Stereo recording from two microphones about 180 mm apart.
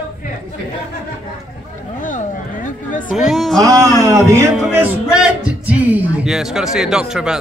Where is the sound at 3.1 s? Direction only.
Centre (ahead or behind).